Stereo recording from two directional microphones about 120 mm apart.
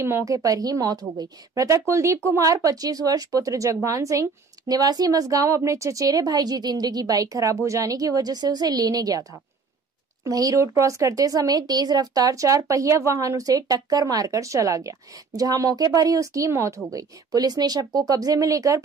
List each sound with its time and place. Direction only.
0.0 s speech: 25° right (ahead or behind)
10.2 s speech: 30° right (ahead or behind)